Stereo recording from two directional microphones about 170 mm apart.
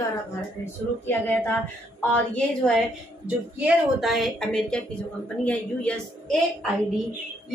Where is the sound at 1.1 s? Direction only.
10° left (ahead or behind).